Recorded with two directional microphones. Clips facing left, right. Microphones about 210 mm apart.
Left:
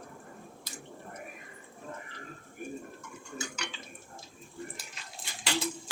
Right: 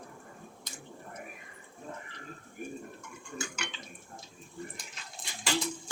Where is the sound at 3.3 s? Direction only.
50° right (ahead or behind).